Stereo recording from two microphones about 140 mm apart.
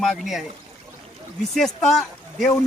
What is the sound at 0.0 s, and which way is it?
Speech, centre (ahead or behind).